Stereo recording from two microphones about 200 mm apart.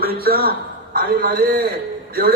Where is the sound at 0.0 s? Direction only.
50° right (ahead or behind).